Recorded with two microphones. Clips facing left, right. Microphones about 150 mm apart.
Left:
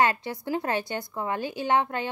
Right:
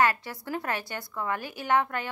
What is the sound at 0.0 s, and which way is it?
A woman's voice, 20° left (ahead or behind).